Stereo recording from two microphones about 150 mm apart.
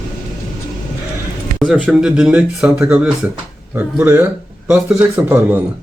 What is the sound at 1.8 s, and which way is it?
Speech, 5° right (ahead or behind).